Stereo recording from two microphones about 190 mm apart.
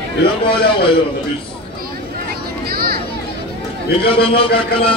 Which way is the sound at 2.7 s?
55° right (ahead or behind).